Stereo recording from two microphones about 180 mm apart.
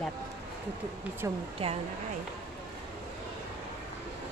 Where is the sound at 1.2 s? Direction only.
15° right (ahead or behind).